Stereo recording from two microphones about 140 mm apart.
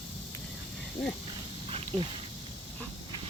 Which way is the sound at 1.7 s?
40° right (ahead or behind).